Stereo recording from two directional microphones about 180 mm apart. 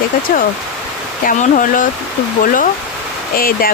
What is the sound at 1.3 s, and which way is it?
Speech, 45° left (ahead or behind).